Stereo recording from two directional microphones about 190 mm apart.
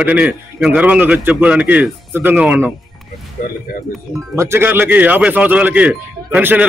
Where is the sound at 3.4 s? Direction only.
50° left (ahead or behind).